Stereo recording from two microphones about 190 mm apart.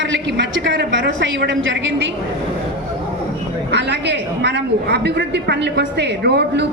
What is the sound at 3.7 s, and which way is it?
A man's voice, 65° right (ahead or behind).